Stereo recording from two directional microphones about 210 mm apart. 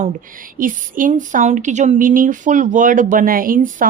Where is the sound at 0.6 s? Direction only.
40° right (ahead or behind).